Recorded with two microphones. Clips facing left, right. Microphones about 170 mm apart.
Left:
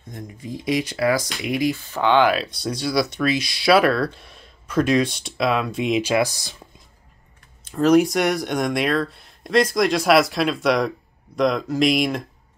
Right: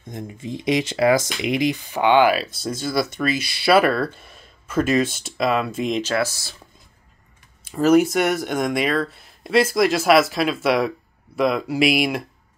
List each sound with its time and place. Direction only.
0.1 s speech: 25° right (ahead or behind); by 6.5 s 15° left (ahead or behind)
7.6 s speech: 5° right (ahead or behind)